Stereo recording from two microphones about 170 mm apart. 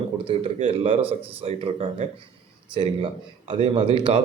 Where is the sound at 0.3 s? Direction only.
35° right (ahead or behind).